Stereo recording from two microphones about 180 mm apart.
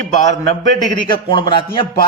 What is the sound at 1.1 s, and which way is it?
Speech, 30° left (ahead or behind).